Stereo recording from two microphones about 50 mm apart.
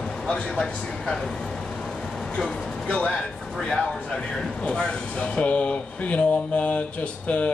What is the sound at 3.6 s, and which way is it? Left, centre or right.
Speech, centre.